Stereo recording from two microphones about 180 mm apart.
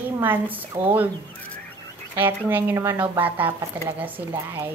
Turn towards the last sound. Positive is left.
turn(degrees=-10)  # may be behind; listen again after turning